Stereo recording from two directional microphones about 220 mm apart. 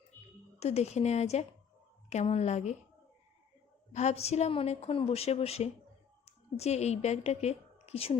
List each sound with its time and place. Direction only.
0.6 s a woman's voice: 30° left (ahead or behind)
3.9 s a woman's voice: 30° left (ahead or behind)